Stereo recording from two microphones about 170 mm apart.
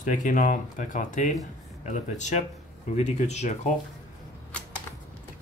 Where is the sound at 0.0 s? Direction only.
50° left (ahead or behind).